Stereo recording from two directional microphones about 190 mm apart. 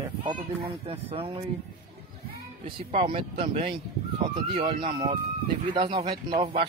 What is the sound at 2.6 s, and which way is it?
Speech, 30° right (ahead or behind).